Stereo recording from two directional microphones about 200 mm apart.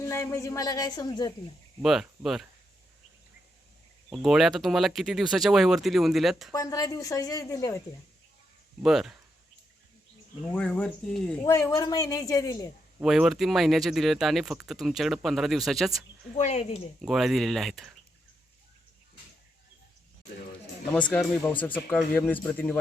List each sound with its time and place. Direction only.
0.0 s a woman's voice: 10° left (ahead or behind)
1.8 s speech: centre (ahead or behind)
4.1 s speech: centre (ahead or behind)
6.5 s a woman's voice: 15° left (ahead or behind)
8.8 s speech: centre (ahead or behind)
10.4 s speech: 5° left (ahead or behind)
11.4 s a woman's voice: 15° left (ahead or behind)
13.0 s speech: centre (ahead or behind)
16.3 s speech: 35° left (ahead or behind)
17.0 s speech: centre (ahead or behind)
20.9 s a woman's voice: 5° left (ahead or behind)